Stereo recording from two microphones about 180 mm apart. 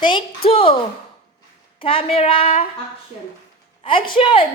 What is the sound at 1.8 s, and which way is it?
Speech, 30° left (ahead or behind).